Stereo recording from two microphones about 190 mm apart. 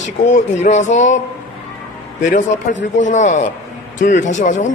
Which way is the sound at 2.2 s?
40° left (ahead or behind).